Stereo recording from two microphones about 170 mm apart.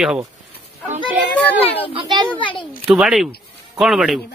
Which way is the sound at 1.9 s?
25° right (ahead or behind).